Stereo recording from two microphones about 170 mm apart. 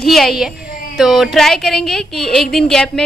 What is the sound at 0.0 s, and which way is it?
A woman's voice, centre (ahead or behind).